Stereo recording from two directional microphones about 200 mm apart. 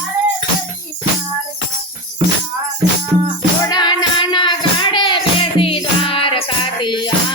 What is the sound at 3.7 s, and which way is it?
Child singing, 20° left (ahead or behind).